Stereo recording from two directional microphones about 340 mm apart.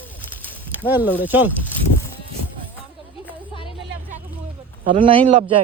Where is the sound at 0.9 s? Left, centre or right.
Centre.